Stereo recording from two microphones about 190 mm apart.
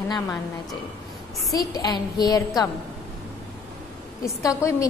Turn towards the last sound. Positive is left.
turn(degrees=15)  # may be behind; listen again after turning